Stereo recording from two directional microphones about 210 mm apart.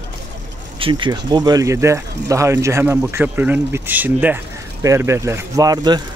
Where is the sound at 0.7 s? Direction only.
25° right (ahead or behind).